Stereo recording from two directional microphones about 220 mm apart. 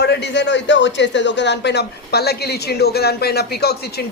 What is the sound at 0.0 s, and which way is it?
A man's voice, 50° left (ahead or behind).